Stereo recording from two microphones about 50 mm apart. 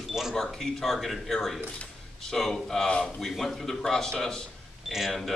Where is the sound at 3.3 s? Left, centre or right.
Centre.